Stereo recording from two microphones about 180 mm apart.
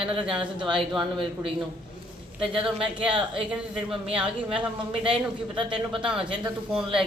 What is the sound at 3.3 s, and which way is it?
Speech, 5° right (ahead or behind).